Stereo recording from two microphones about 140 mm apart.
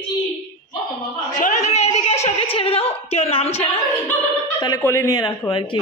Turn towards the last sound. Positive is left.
turn(degrees=20)  # may be behind; listen again after turning